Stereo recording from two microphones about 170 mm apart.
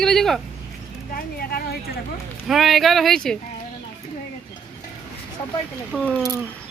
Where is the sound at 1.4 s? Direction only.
65° left (ahead or behind).